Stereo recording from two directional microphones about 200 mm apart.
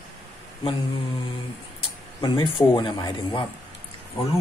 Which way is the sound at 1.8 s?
20° left (ahead or behind).